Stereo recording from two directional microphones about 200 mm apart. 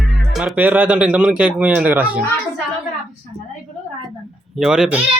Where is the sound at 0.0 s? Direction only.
Centre (ahead or behind).